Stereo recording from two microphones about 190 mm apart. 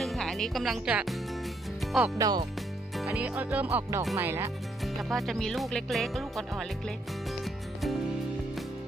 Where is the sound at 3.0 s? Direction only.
10° right (ahead or behind).